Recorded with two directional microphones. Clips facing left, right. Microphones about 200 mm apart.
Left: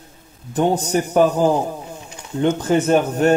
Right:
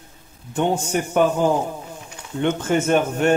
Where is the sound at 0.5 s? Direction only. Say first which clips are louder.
Left 3 dB; 40° left (ahead or behind).